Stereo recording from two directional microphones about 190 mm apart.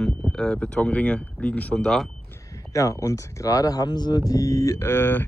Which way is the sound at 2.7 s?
15° left (ahead or behind).